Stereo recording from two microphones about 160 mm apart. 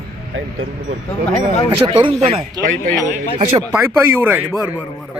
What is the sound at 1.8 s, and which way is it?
Speech, 35° right (ahead or behind).